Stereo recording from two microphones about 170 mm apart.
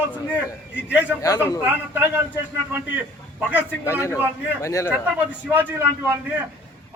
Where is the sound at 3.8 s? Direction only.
15° left (ahead or behind).